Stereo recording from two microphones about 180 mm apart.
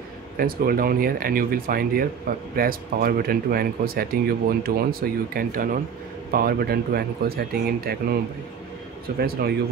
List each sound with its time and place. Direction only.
0.4 s speech: 55° right (ahead or behind)